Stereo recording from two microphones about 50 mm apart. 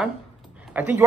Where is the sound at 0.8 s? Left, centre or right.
Right.